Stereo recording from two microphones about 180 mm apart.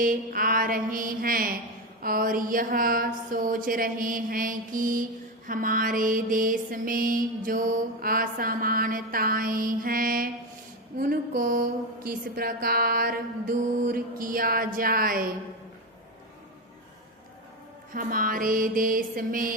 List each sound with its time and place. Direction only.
0.0 s music: 50° right (ahead or behind)
17.9 s music: 50° right (ahead or behind)